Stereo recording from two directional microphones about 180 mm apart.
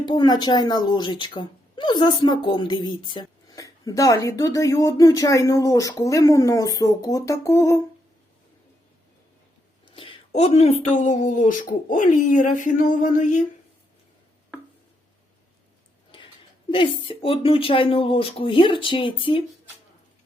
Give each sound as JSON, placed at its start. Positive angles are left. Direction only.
{"t": 0.0, "sound": "speech", "side_deg": 25}
{"t": 9.8, "sound": "speech", "side_deg": 30}
{"t": 16.7, "sound": "speech", "side_deg": 30}